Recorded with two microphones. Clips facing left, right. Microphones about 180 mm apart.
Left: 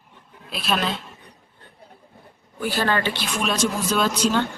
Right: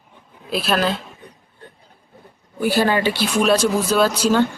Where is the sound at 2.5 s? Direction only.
10° right (ahead or behind).